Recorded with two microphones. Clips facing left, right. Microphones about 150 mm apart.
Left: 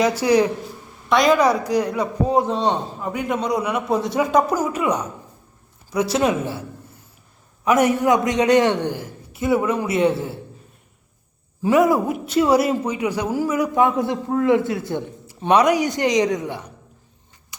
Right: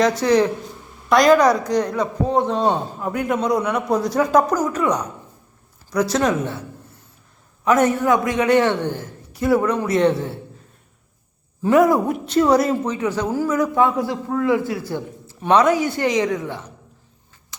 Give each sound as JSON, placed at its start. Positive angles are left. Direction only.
{"t": 0.2, "sound": "a woman's voice", "side_deg": 10}
{"t": 2.6, "sound": "a man's voice", "side_deg": 0}
{"t": 6.1, "sound": "a woman's voice", "side_deg": 10}
{"t": 11.7, "sound": "a woman's voice", "side_deg": 0}